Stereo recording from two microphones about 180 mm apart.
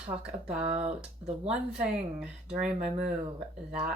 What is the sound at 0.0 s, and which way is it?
Speech, 35° right (ahead or behind).